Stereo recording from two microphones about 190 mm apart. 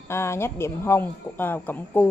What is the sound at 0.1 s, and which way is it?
Speech, 15° left (ahead or behind).